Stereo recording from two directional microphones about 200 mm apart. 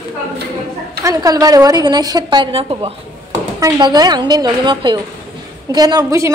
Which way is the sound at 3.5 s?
15° right (ahead or behind).